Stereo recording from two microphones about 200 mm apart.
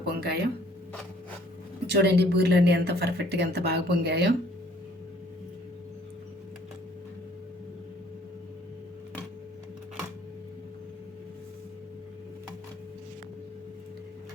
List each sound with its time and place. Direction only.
0.0 s speech: 55° right (ahead or behind)
1.9 s speech: 55° right (ahead or behind)